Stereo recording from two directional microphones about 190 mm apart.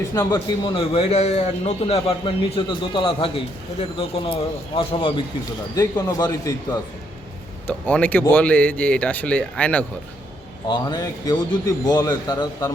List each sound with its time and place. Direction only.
0.1 s a man's voice: 15° left (ahead or behind)
7.7 s speech: 5° left (ahead or behind)
10.7 s a man's voice: 20° left (ahead or behind)